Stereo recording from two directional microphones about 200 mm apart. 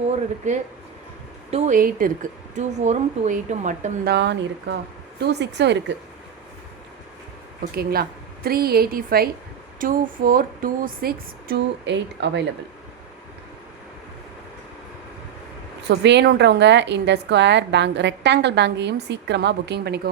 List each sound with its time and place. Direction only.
0.4 s speech: 35° right (ahead or behind)
4.0 s a woman's voice: 60° right (ahead or behind)
7.6 s speech: 50° right (ahead or behind)
15.8 s a woman's voice: 60° right (ahead or behind)